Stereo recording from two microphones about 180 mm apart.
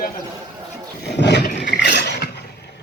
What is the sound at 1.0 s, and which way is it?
Roar, 70° left (ahead or behind).